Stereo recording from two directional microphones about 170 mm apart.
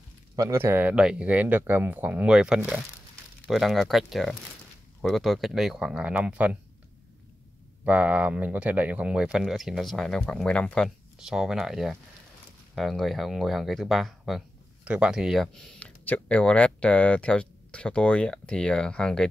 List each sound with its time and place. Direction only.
0.4 s speech: 15° right (ahead or behind)
7.8 s speech: 10° right (ahead or behind)